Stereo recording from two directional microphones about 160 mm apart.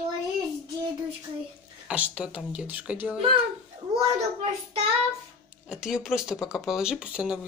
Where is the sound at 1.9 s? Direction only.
5° right (ahead or behind).